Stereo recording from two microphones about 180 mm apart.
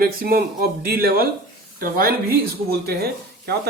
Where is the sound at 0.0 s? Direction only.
55° right (ahead or behind).